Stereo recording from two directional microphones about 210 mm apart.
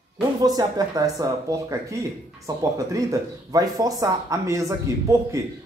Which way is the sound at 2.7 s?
15° right (ahead or behind).